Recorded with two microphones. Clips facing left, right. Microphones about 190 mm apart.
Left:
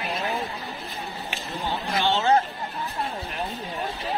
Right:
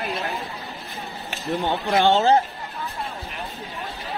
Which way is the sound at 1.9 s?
50° right (ahead or behind).